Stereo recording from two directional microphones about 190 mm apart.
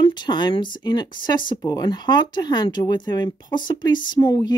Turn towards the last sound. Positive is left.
turn(degrees=20)  # may be behind; listen again after turning